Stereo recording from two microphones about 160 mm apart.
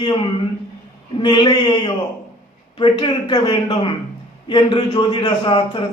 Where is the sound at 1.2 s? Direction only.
30° left (ahead or behind).